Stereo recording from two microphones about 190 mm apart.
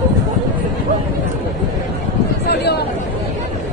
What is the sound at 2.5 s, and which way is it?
Chatter, 60° left (ahead or behind).